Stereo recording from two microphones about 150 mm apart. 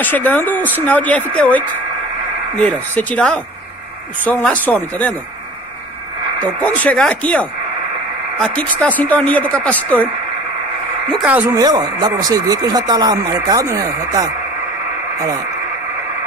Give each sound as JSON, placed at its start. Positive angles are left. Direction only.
{"t": 0.0, "sound": "speech", "side_deg": 10}
{"t": 2.6, "sound": "speech", "side_deg": 10}
{"t": 6.4, "sound": "speech", "side_deg": 10}
{"t": 11.4, "sound": "speech", "side_deg": -25}